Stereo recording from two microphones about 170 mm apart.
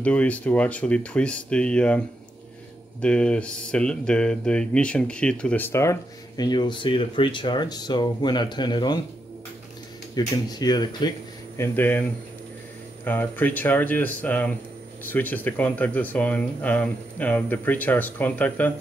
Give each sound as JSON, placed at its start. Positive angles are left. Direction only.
{"t": 0.0, "sound": "speech", "side_deg": 5}
{"t": 10.1, "sound": "speech", "side_deg": 25}